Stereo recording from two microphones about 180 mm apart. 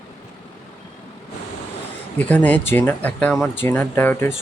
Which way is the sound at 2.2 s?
10° left (ahead or behind).